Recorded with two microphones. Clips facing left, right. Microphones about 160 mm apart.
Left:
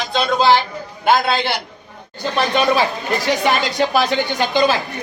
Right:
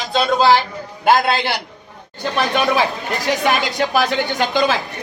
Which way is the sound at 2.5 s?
5° right (ahead or behind).